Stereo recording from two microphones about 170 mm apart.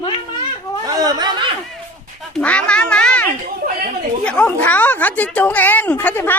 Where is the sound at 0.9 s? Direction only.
20° right (ahead or behind).